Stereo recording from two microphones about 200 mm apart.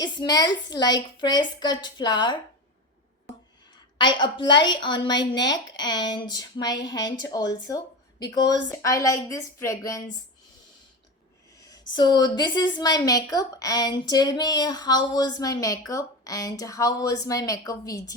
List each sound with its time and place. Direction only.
0.0 s a woman's voice: 20° left (ahead or behind)
3.9 s a woman's voice: 25° left (ahead or behind)
11.9 s a woman's voice: 20° left (ahead or behind)